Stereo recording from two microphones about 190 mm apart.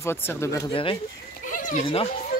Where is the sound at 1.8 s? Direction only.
30° left (ahead or behind).